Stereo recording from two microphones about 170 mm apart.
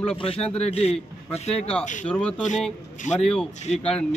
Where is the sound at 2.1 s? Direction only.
5° left (ahead or behind).